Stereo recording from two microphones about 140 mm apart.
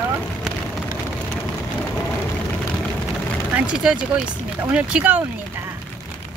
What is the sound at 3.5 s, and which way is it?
Speech, 10° right (ahead or behind).